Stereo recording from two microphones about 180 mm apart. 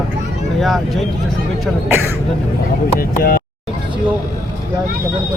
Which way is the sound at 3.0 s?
55° left (ahead or behind).